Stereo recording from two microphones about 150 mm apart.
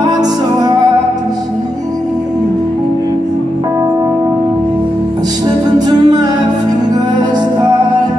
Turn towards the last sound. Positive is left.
turn(degrees=-25)  # may be behind; listen again after turning